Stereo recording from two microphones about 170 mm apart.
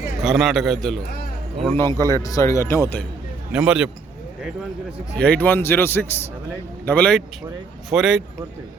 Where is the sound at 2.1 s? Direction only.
20° left (ahead or behind).